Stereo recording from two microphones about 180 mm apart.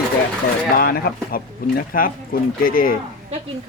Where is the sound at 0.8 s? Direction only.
55° left (ahead or behind).